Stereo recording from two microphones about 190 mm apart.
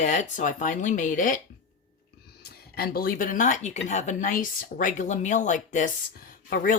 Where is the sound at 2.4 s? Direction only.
55° left (ahead or behind).